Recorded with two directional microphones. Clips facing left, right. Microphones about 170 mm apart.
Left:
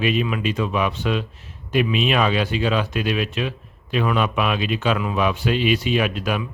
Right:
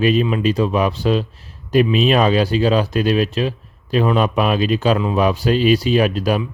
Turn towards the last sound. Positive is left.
turn(degrees=-35)  # may be behind; listen again after turning